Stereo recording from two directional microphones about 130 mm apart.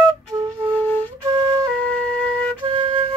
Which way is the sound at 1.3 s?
35° right (ahead or behind).